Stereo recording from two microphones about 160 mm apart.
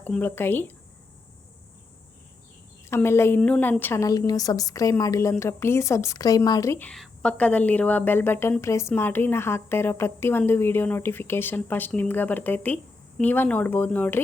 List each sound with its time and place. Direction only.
0.0 s a woman's voice: 10° left (ahead or behind)
2.9 s a woman's voice: 15° left (ahead or behind)